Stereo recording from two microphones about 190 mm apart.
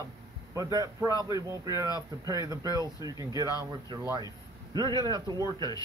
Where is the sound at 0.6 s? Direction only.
20° right (ahead or behind).